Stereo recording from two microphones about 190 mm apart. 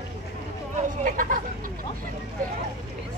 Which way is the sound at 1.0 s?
45° right (ahead or behind).